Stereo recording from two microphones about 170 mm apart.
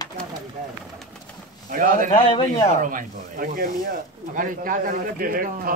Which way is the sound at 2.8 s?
50° right (ahead or behind).